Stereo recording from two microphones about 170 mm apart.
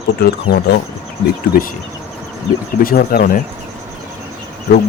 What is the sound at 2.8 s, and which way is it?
Speech, 55° left (ahead or behind).